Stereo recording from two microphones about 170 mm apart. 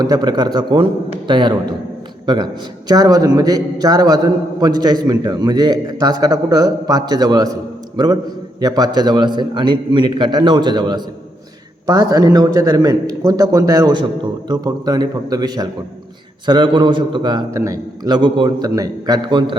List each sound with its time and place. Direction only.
0.0 s a man's voice: 25° right (ahead or behind)